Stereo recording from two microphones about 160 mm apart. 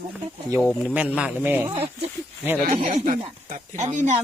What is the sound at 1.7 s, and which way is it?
Speech, 35° right (ahead or behind).